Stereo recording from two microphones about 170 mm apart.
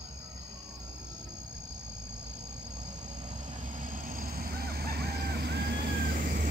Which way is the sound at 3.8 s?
50° right (ahead or behind).